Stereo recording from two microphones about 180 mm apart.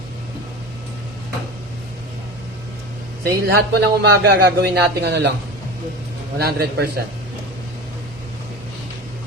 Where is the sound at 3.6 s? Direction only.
65° right (ahead or behind).